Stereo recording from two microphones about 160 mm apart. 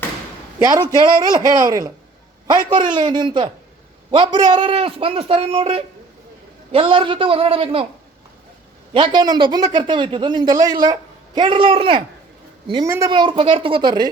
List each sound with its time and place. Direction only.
0.6 s speech: 20° right (ahead or behind)
8.9 s a woman's voice: 30° right (ahead or behind)